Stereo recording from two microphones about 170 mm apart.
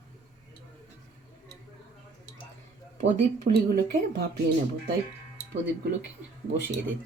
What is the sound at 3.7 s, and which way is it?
Speech, 70° right (ahead or behind).